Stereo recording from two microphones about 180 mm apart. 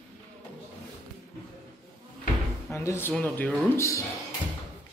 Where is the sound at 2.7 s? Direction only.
15° left (ahead or behind).